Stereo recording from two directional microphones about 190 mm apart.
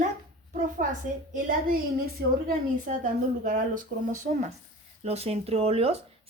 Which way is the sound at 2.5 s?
45° right (ahead or behind).